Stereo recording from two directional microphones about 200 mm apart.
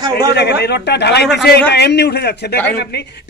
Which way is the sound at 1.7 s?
55° left (ahead or behind).